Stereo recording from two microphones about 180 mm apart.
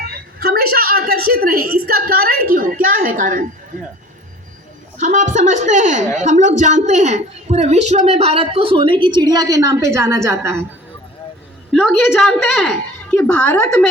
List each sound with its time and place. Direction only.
0.1 s a woman's voice: 60° right (ahead or behind)
4.9 s a woman's voice: 45° right (ahead or behind); by 10.7 s 15° right (ahead or behind)
11.7 s a woman's voice: centre (ahead or behind)